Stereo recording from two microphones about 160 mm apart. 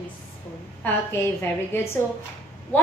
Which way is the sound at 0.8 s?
15° left (ahead or behind).